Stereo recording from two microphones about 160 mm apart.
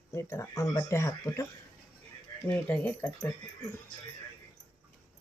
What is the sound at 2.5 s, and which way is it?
Speech, 10° left (ahead or behind).